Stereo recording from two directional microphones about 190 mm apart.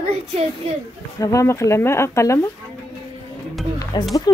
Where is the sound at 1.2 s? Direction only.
15° left (ahead or behind).